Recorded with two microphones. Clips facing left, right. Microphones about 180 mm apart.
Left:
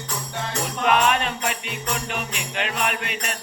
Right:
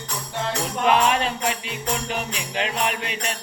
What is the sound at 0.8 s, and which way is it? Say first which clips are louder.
Jingle bell: right 1 dB; 30° right (ahead or behind).